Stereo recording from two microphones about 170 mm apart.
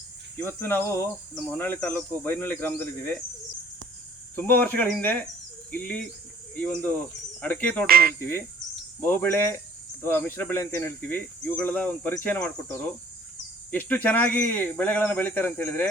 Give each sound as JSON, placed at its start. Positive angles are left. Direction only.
{"t": 0.3, "sound": "cricket", "side_deg": 15}
{"t": 4.4, "sound": "cricket", "side_deg": 10}
{"t": 7.9, "sound": "speech", "side_deg": -60}
{"t": 9.0, "sound": "cricket", "side_deg": 10}